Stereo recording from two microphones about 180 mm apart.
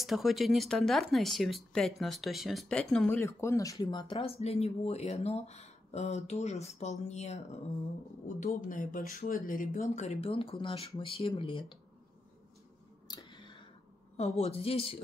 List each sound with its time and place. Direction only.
0.0 s speech: centre (ahead or behind)
3.2 s speech: 15° left (ahead or behind)
13.1 s a sound: 25° left (ahead or behind)
14.1 s speech: 35° left (ahead or behind)